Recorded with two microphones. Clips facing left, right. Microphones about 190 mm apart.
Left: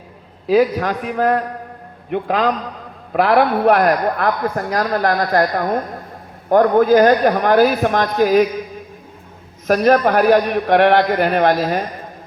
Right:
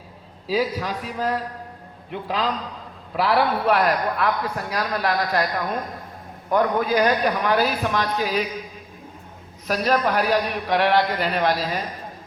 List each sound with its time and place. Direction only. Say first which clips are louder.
0.4 s a man's voice: left 9 dB; 55° left (ahead or behind)
9.6 s a man's voice: left 8 dB; 50° left (ahead or behind)